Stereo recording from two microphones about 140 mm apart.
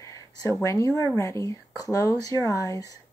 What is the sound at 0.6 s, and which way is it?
Speech, 25° left (ahead or behind).